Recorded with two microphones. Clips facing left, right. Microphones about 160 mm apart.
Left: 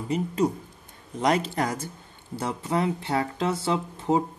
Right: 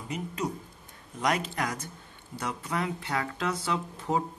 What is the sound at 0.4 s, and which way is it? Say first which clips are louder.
Speech: left 8 dB; 25° left (ahead or behind).